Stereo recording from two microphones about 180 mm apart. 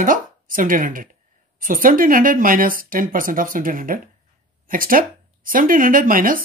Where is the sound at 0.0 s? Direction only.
50° right (ahead or behind).